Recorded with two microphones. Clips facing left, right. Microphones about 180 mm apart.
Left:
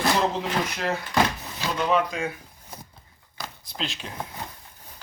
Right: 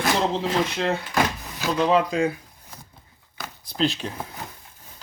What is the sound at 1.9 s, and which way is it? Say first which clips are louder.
Speech: right 3 dB; 30° right (ahead or behind).